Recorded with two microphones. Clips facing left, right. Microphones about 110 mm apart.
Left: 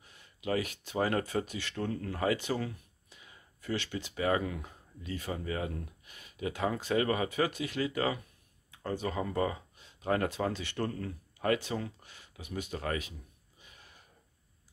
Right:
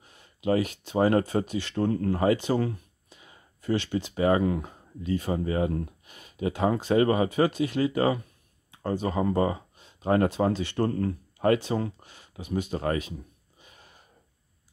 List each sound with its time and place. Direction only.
0.0 s speech: 30° right (ahead or behind)
1.9 s speech: 40° right (ahead or behind)
13.6 s a sound: 35° right (ahead or behind)